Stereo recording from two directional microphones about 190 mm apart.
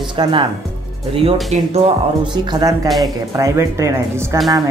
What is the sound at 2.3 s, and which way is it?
Speech, 20° right (ahead or behind).